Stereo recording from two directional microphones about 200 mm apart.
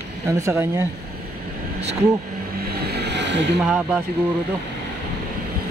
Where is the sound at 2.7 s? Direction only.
55° right (ahead or behind).